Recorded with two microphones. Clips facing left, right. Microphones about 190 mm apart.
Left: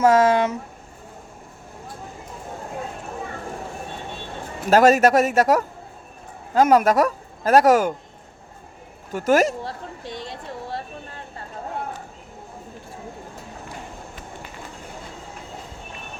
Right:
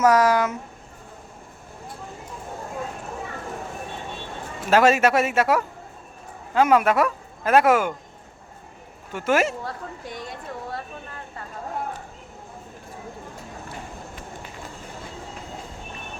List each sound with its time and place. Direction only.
0.0 s speech: 25° left (ahead or behind)
4.7 s a man's voice: 40° left (ahead or behind)
9.1 s a man's voice: 40° left (ahead or behind)
10.0 s speech: 25° left (ahead or behind)